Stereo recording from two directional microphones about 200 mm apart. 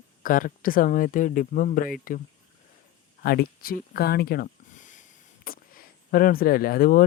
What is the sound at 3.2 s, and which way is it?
Speech, 50° left (ahead or behind).